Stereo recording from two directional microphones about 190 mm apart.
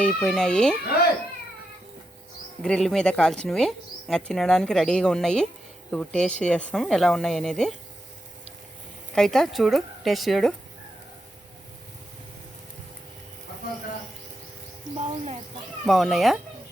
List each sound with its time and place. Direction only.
0.0 s speech: 5° left (ahead or behind)
2.6 s speech: 5° left (ahead or behind)
9.1 s speech: centre (ahead or behind)
14.9 s a woman's voice: 35° right (ahead or behind)
15.9 s speech: centre (ahead or behind)